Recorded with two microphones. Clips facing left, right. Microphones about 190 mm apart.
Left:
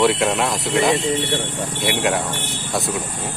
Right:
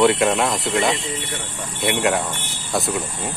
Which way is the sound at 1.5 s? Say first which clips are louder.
Left 6 dB; 65° left (ahead or behind).